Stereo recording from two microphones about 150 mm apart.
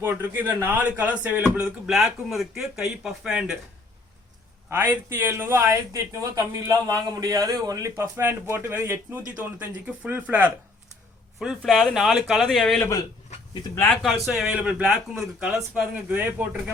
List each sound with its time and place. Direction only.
0.0 s a man's voice: 15° right (ahead or behind)
4.7 s a man's voice: 15° right (ahead or behind); by 12.8 s centre (ahead or behind)
14.0 s a man's voice: centre (ahead or behind)